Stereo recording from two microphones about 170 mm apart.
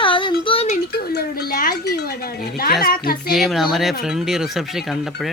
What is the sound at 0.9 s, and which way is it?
Speech, 65° left (ahead or behind).